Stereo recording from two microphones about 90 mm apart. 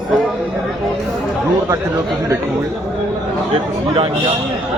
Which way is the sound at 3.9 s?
90° right.